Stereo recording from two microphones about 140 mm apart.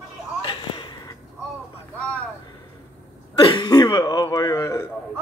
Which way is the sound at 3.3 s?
30° left (ahead or behind).